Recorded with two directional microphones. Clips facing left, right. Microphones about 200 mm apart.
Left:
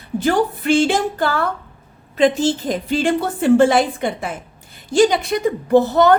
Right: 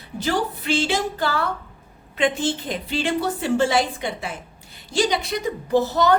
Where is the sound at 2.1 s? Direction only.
40° left (ahead or behind); by 6.1 s 55° left (ahead or behind).